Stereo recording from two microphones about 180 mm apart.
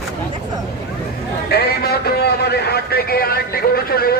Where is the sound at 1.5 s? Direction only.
60° left (ahead or behind).